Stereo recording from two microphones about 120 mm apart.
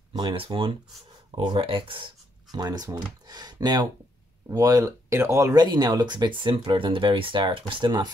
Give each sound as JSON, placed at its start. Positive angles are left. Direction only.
{"t": 0.1, "sound": "speech", "side_deg": -40}
{"t": 2.5, "sound": "speech", "side_deg": -35}
{"t": 5.6, "sound": "speech", "side_deg": -35}